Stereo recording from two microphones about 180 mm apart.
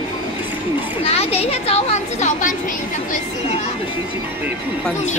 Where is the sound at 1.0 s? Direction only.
35° left (ahead or behind).